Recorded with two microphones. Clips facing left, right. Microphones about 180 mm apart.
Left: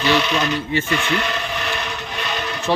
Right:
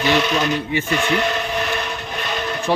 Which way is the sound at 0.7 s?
15° right (ahead or behind).